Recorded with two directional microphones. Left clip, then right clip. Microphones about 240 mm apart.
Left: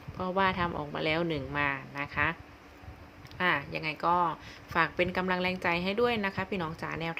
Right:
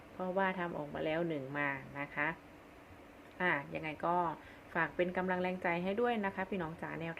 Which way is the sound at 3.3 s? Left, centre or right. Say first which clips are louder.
Left 6 dB; centre.